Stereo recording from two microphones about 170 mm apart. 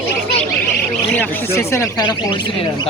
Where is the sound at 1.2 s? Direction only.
15° left (ahead or behind).